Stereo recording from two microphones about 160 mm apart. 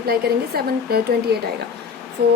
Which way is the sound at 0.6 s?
80° right.